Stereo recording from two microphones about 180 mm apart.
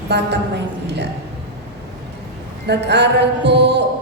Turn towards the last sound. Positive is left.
turn(degrees=-70)  # may be behind; listen again after turning